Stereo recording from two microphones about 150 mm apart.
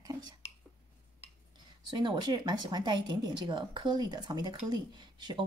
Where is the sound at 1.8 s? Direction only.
30° right (ahead or behind).